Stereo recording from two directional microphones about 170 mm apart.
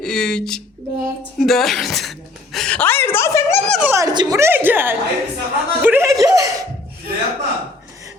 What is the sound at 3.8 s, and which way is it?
A woman's voice, 15° right (ahead or behind).